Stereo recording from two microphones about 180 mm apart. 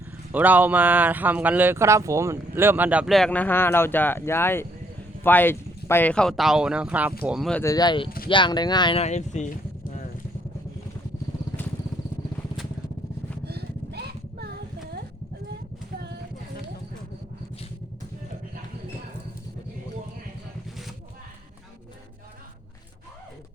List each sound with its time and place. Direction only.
0.3 s speech: 10° right (ahead or behind)
7.6 s speech: 20° left (ahead or behind); by 10.0 s 40° left (ahead or behind)
13.4 s vehicle: 65° right (ahead or behind)